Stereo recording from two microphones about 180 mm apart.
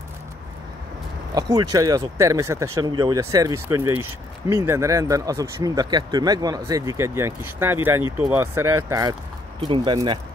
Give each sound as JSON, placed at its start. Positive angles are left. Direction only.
{"t": 1.3, "sound": "speech", "side_deg": -20}